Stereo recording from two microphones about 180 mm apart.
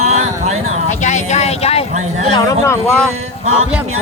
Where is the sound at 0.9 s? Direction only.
40° left (ahead or behind).